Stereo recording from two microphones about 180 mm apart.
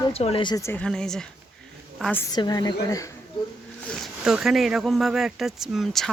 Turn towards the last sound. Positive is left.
turn(degrees=0)  # may be behind; listen again after turning